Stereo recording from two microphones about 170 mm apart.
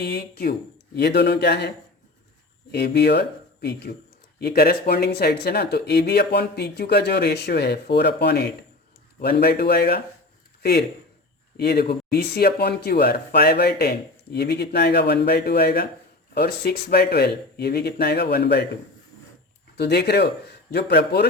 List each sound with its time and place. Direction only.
0.0 s speech: 65° left (ahead or behind)
0.9 s speech: 80° left
2.7 s speech: 80° left
19.7 s speech: 75° left (ahead or behind)